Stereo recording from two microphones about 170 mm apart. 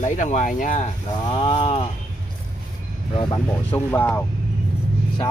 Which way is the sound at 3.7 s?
10° left (ahead or behind).